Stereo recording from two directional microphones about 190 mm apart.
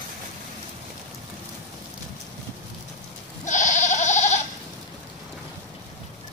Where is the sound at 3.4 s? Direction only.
40° left (ahead or behind).